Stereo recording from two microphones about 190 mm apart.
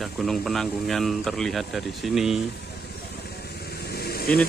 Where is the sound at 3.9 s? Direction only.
55° left (ahead or behind).